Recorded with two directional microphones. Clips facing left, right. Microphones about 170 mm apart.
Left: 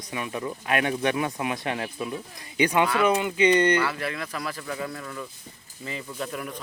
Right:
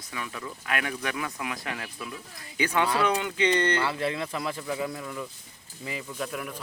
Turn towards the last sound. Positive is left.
turn(degrees=0)  # may be behind; listen again after turning